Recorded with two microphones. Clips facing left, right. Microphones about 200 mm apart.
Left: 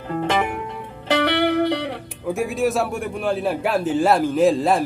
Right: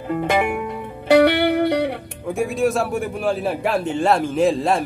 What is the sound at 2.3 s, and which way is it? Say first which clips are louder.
A man's voice: right 1 dB; centre (ahead or behind).